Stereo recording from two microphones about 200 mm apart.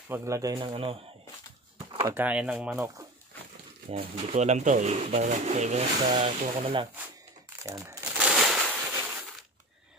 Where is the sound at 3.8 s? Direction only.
30° right (ahead or behind).